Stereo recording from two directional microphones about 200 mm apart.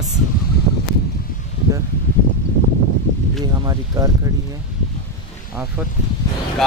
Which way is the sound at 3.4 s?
20° right (ahead or behind).